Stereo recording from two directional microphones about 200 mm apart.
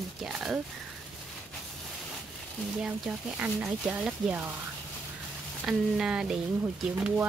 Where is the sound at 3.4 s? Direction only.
5° right (ahead or behind).